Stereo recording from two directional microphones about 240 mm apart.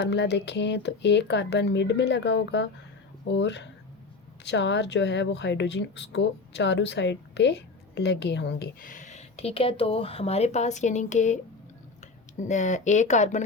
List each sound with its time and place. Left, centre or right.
0.0 s speech: left
12.4 s speech: left